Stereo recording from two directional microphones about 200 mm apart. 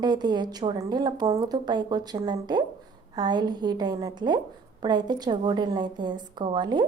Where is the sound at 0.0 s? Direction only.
20° right (ahead or behind).